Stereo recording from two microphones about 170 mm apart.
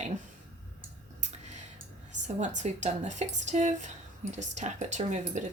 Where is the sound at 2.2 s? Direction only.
45° right (ahead or behind).